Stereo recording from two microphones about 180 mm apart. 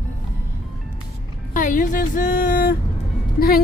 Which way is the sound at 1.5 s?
45° left (ahead or behind).